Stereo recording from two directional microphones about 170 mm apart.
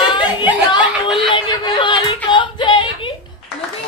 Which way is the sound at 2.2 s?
30° left (ahead or behind).